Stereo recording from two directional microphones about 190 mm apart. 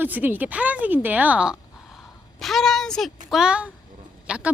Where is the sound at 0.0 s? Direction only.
10° right (ahead or behind).